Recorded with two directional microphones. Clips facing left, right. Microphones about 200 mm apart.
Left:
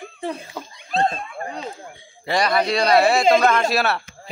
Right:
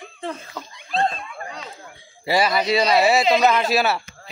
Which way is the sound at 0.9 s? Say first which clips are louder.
Left 1 dB; 40° left (ahead or behind).